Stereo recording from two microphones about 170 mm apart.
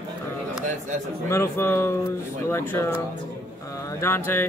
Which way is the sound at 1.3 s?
15° left (ahead or behind).